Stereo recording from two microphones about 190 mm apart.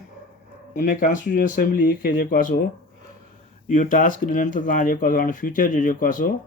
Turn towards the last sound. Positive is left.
turn(degrees=45)  # may be behind; listen again after turning